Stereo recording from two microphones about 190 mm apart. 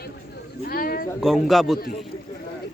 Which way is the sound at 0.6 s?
50° left (ahead or behind).